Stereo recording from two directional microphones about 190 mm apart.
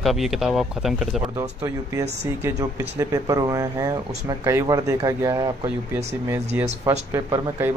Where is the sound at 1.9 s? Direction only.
15° right (ahead or behind).